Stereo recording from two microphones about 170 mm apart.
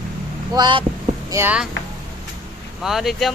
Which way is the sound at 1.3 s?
15° right (ahead or behind).